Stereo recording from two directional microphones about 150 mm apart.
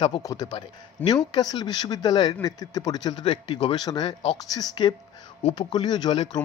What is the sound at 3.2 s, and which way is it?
Speech, 45° left (ahead or behind).